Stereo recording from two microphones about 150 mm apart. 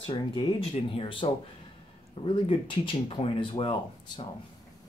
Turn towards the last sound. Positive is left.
turn(degrees=35)  # may be behind; listen again after turning